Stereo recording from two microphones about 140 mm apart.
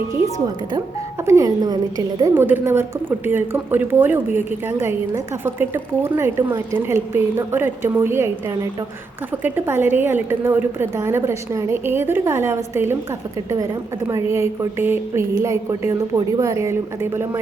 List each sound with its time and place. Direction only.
0.3 s a woman's voice: 30° right (ahead or behind)
2.3 s a woman's voice: 15° right (ahead or behind)